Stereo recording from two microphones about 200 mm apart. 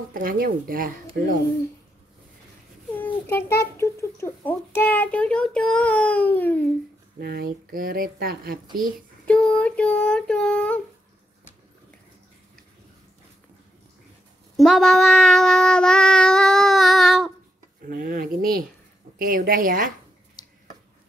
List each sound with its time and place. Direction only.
0.1 s speech: 45° right (ahead or behind)
2.9 s a sound: 10° left (ahead or behind)
3.7 s a child's voice: 15° left (ahead or behind)
7.2 s speech: 50° right (ahead or behind)
9.2 s a sound: 5° left (ahead or behind)
14.6 s child singing: centre (ahead or behind)
17.8 s speech: 45° right (ahead or behind)